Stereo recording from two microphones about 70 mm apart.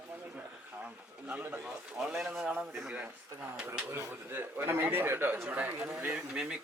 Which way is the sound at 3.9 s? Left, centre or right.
Right.